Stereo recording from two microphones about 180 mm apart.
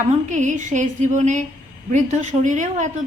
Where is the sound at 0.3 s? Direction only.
40° right (ahead or behind).